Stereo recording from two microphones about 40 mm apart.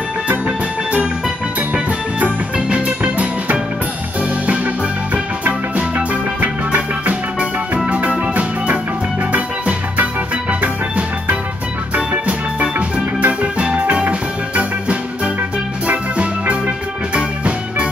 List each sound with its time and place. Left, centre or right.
1.7 s music: right
7.3 s music: right
10.6 s music: right